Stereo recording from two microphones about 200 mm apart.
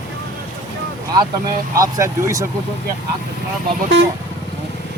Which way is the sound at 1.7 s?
15° right (ahead or behind).